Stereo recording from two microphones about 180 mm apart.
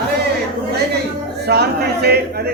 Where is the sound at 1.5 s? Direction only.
65° right (ahead or behind).